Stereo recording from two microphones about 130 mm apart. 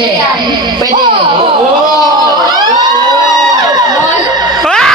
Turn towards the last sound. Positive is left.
turn(degrees=5)  # may be behind; listen again after turning